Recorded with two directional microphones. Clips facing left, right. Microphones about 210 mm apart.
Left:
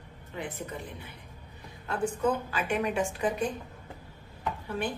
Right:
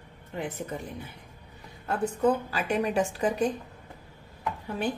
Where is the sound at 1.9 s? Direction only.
35° right (ahead or behind).